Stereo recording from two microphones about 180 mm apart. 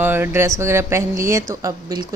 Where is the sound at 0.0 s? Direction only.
10° right (ahead or behind).